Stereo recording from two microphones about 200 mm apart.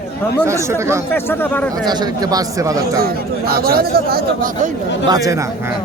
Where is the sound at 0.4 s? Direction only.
15° right (ahead or behind).